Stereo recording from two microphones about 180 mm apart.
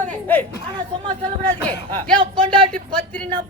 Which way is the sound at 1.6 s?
5° left (ahead or behind).